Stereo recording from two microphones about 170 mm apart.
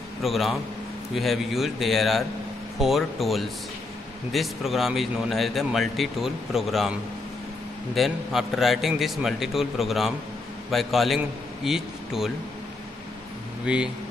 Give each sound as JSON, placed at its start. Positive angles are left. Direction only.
{"t": 0.2, "sound": "a man's voice", "side_deg": 0}
{"t": 13.7, "sound": "speech", "side_deg": -5}